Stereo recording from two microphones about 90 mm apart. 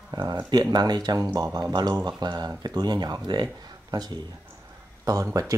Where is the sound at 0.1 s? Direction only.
55° right (ahead or behind).